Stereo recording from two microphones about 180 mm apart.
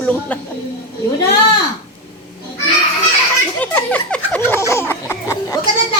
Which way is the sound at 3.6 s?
10° left (ahead or behind).